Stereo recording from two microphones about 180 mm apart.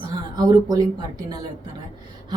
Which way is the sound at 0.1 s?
20° right (ahead or behind).